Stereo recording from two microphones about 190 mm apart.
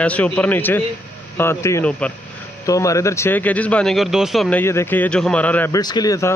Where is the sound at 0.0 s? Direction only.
5° left (ahead or behind).